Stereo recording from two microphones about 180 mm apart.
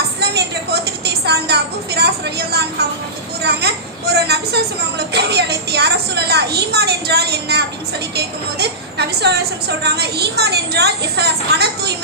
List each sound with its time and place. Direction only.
0.2 s a sound: 65° right (ahead or behind)
2.0 s vehicle: 65° right (ahead or behind)
4.1 s music: 65° right (ahead or behind)
8.1 s a woman's voice: 65° right (ahead or behind)